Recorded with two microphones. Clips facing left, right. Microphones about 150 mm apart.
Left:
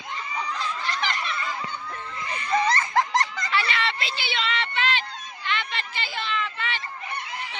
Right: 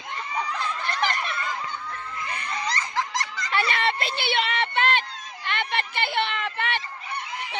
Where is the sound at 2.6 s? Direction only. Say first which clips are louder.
Left 5 dB; 55° left (ahead or behind).